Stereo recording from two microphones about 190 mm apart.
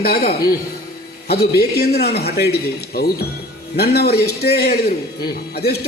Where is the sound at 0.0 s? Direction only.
50° left (ahead or behind).